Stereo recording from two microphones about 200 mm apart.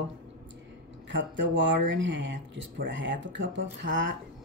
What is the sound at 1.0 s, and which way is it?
Speech, 65° right (ahead or behind).